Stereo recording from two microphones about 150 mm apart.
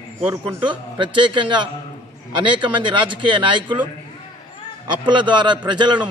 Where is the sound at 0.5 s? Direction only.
30° right (ahead or behind).